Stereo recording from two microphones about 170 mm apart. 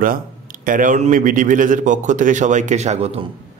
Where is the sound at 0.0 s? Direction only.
55° right (ahead or behind); by 3.3 s 40° right (ahead or behind).